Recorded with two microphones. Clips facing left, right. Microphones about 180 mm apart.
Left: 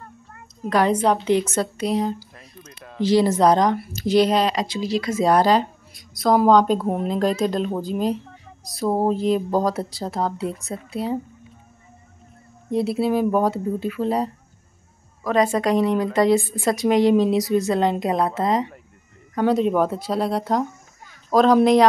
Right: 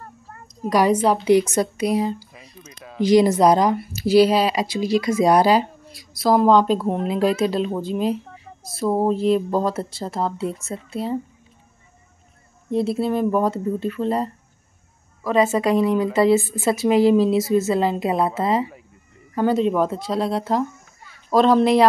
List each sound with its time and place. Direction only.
0.0 s a sound: 40° right (ahead or behind)
0.7 s speech: 10° right (ahead or behind)
3.0 s speech: 15° right (ahead or behind)
12.7 s speech: centre (ahead or behind)